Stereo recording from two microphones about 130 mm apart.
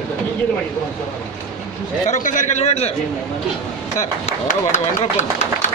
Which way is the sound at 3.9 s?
75° left (ahead or behind).